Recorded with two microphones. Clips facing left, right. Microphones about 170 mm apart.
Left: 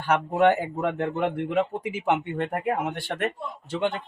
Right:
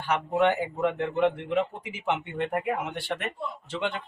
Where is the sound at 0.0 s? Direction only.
45° left (ahead or behind).